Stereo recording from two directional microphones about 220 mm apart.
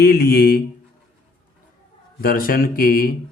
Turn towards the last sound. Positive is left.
turn(degrees=40)  # may be behind; listen again after turning